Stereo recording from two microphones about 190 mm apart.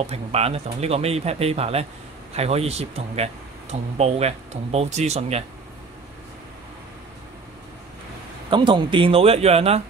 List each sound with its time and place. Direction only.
0.0 s speech: 35° right (ahead or behind)
8.5 s speech: 25° right (ahead or behind)